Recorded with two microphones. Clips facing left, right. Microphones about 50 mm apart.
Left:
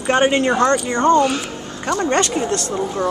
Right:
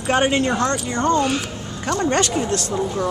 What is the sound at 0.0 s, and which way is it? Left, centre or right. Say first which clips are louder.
Speech: left 3 dB; centre.